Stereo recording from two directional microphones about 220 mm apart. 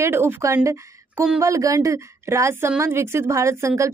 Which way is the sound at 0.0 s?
10° right (ahead or behind).